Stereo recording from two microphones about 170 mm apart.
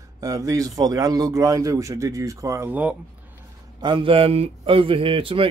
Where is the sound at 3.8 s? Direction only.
30° right (ahead or behind).